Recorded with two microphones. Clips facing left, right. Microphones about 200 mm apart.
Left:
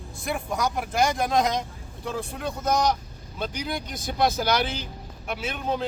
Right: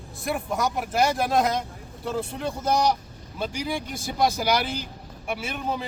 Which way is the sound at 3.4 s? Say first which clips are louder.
Right 2 dB; 10° right (ahead or behind).